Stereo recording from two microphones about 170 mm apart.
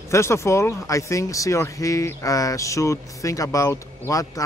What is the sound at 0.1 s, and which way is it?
Speech, 15° left (ahead or behind).